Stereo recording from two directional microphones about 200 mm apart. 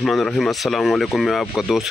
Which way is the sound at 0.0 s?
Centre (ahead or behind).